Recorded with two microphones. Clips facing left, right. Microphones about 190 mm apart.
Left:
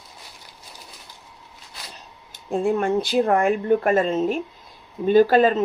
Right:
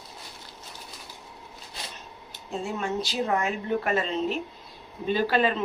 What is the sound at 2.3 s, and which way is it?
Speech, 55° left (ahead or behind).